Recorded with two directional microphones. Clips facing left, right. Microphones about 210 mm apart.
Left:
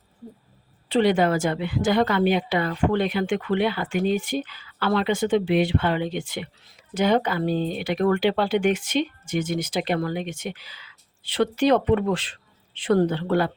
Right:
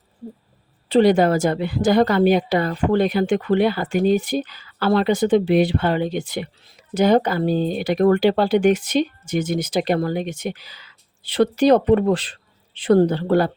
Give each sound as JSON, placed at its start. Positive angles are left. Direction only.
{"t": 0.9, "sound": "a woman's voice", "side_deg": -40}